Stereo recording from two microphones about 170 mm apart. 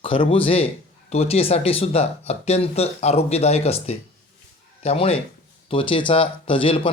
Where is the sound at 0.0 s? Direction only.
35° left (ahead or behind).